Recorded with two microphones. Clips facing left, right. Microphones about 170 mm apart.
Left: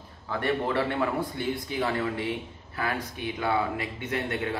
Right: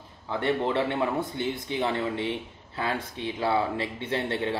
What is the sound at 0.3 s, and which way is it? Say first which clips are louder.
A man's voice: right 1 dB; 20° right (ahead or behind).